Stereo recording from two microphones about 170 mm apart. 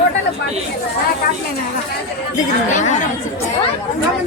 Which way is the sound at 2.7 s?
45° left (ahead or behind).